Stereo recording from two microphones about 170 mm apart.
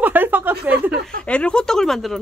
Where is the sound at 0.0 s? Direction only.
10° right (ahead or behind).